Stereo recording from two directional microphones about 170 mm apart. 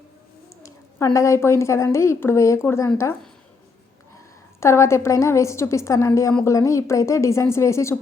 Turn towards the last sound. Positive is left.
turn(degrees=15)  # may be behind; listen again after turning